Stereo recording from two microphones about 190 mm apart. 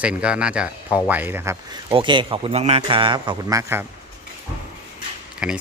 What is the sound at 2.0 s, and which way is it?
A man's voice, 25° right (ahead or behind).